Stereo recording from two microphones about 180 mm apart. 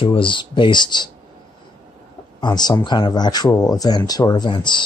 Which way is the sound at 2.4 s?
25° left (ahead or behind).